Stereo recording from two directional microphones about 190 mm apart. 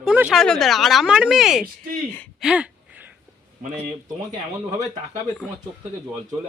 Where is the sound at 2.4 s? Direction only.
5° right (ahead or behind).